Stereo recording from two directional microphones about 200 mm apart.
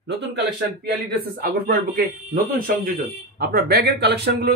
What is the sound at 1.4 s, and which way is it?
Speech, 50° right (ahead or behind).